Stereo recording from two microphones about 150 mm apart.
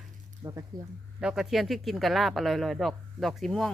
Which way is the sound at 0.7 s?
25° right (ahead or behind).